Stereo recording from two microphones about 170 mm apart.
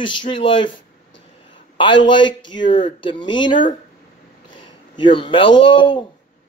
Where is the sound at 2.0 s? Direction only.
25° left (ahead or behind).